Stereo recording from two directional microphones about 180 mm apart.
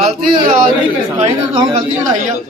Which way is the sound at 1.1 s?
35° right (ahead or behind).